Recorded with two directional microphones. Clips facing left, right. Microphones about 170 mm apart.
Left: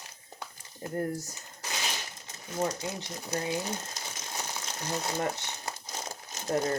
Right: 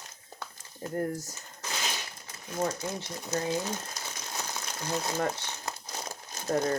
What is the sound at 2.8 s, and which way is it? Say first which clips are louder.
Speech: right 1 dB; 15° left (ahead or behind).